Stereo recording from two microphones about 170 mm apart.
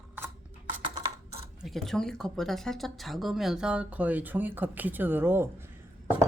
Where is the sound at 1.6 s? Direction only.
Centre (ahead or behind).